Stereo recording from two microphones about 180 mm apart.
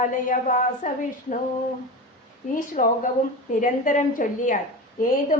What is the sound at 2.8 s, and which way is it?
A woman's voice, 45° left (ahead or behind).